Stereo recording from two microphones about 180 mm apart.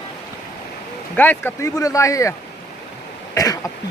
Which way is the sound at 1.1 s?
10° left (ahead or behind).